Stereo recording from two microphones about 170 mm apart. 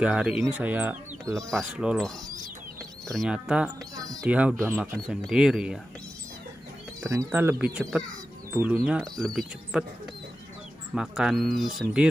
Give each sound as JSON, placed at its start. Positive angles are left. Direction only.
{"t": 0.0, "sound": "speech", "side_deg": -5}
{"t": 3.9, "sound": "speech", "side_deg": -20}
{"t": 4.3, "sound": "speech", "side_deg": -10}
{"t": 4.7, "sound": "speech", "side_deg": 0}
{"t": 7.0, "sound": "bird", "side_deg": -15}
{"t": 7.3, "sound": "speech", "side_deg": -10}
{"t": 11.0, "sound": "speech", "side_deg": -5}